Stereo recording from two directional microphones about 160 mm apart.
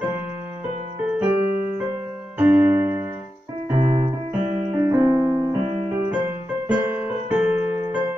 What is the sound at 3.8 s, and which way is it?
Keyboard, 35° right (ahead or behind).